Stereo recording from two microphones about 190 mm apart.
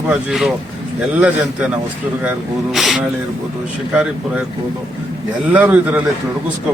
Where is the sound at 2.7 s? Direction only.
Centre (ahead or behind).